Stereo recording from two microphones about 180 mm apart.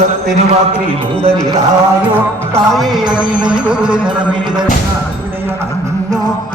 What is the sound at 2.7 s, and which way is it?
Music, centre (ahead or behind).